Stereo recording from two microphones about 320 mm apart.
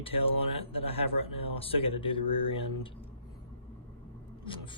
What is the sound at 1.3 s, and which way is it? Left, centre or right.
Speech, centre.